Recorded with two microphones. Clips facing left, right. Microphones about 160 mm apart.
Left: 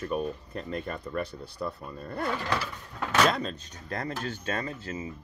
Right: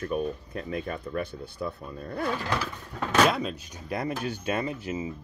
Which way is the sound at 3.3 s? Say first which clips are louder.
Right 2 dB; 10° right (ahead or behind).